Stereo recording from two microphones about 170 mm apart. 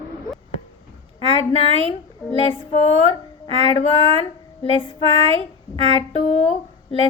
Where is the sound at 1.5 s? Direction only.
35° left (ahead or behind).